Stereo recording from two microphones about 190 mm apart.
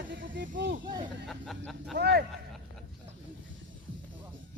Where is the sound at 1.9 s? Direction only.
60° right (ahead or behind).